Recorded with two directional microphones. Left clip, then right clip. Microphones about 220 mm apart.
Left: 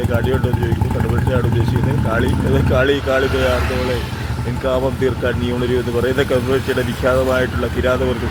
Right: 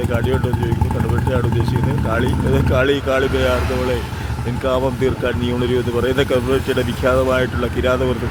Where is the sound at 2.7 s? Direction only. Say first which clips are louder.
Left 1 dB; 15° right (ahead or behind).